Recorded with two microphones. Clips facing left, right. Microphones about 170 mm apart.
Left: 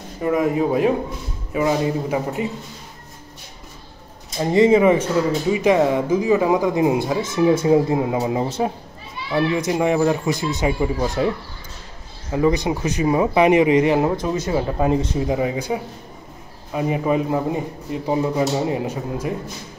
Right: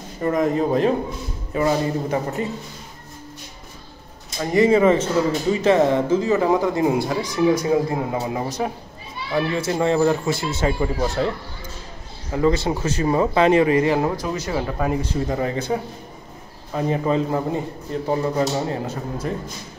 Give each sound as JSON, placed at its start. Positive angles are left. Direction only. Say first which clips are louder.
{"t": 0.2, "sound": "speech", "louder": "left 1 dB", "side_deg": 10}
{"t": 4.4, "sound": "speech", "louder": "left 2 dB", "side_deg": 25}
{"t": 15.1, "sound": "speech", "louder": "left 2 dB", "side_deg": 10}